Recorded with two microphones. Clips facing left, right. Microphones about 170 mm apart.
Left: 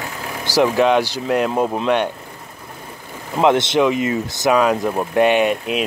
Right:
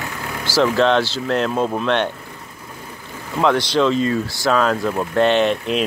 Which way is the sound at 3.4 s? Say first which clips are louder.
Left 2 dB; 20° left (ahead or behind).